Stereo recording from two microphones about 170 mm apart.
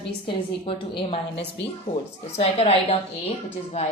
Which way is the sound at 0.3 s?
30° left (ahead or behind).